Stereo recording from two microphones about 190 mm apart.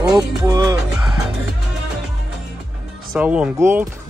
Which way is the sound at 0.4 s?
20° right (ahead or behind).